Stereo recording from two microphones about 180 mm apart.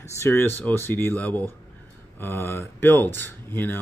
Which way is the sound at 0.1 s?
15° left (ahead or behind).